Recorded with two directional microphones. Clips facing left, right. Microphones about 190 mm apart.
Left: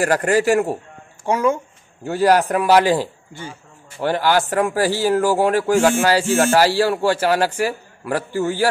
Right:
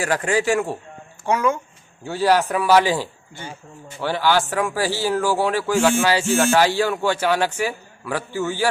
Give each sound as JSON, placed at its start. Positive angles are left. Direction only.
{"t": 0.3, "sound": "a man's voice", "side_deg": 40}
{"t": 1.3, "sound": "speech", "side_deg": 25}
{"t": 2.0, "sound": "a man's voice", "side_deg": 45}